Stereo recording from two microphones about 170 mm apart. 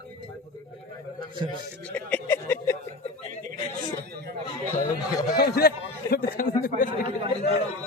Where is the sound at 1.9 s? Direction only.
10° left (ahead or behind).